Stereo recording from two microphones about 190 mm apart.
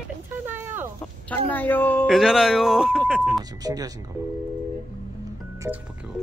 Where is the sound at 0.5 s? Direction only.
10° right (ahead or behind).